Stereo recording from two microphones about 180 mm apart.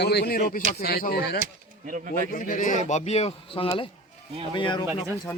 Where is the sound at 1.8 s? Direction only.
45° right (ahead or behind).